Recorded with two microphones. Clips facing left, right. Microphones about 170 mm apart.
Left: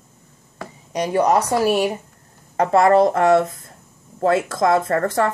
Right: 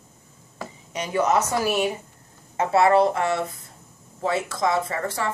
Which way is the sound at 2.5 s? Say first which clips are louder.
Left 4 dB; 45° left (ahead or behind).